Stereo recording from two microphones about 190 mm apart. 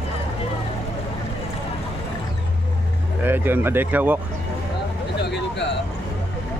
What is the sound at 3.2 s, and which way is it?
Speech, 10° right (ahead or behind).